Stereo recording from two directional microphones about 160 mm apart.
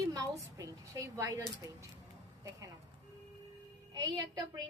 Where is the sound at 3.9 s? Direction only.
25° right (ahead or behind).